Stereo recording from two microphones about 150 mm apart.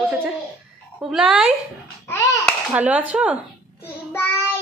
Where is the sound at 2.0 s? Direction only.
20° left (ahead or behind).